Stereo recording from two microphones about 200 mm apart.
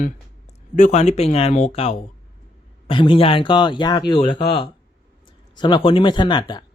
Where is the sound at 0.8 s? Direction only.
35° left (ahead or behind).